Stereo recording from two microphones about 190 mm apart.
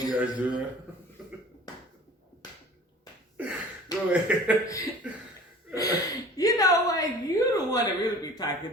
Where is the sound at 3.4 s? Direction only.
10° right (ahead or behind).